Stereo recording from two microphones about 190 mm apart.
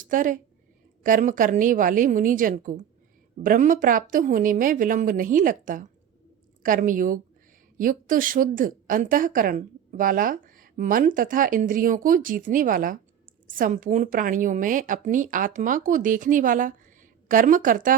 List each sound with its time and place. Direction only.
0.0 s a woman's voice: 45° right (ahead or behind)